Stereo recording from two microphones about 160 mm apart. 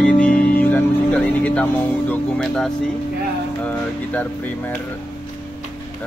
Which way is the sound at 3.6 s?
10° left (ahead or behind).